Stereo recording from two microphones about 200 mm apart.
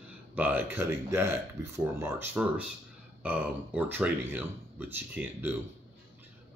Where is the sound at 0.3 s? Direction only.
10° right (ahead or behind).